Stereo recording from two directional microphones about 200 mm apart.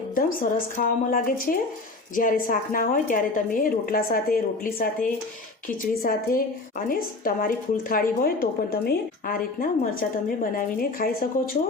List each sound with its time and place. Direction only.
0.1 s a woman's voice: 45° left (ahead or behind)